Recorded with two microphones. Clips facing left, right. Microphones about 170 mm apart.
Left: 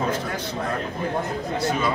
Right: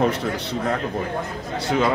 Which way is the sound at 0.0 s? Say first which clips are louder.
Right 4 dB; 75° right (ahead or behind).